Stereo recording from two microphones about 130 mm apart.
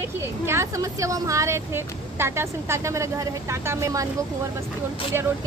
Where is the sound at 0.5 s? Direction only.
25° right (ahead or behind).